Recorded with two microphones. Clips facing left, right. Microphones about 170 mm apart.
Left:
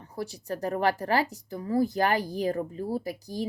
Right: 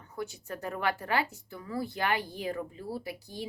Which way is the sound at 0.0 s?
35° left (ahead or behind).